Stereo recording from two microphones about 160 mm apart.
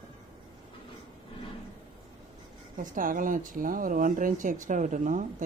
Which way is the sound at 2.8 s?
60° right (ahead or behind).